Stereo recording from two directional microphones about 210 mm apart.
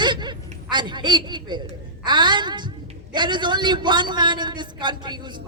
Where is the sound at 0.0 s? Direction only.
20° right (ahead or behind).